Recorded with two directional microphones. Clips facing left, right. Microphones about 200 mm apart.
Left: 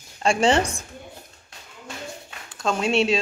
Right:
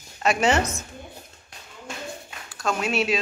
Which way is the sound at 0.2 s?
30° left (ahead or behind).